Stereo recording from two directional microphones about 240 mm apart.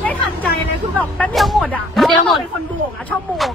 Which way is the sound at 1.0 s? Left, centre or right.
Centre.